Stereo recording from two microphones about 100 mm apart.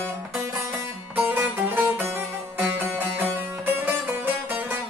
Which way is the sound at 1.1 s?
20° right (ahead or behind).